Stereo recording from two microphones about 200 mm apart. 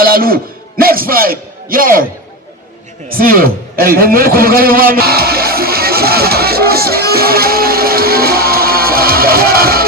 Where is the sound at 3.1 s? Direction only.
45° right (ahead or behind).